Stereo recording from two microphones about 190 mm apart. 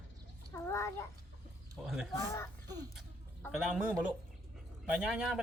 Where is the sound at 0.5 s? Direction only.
15° left (ahead or behind).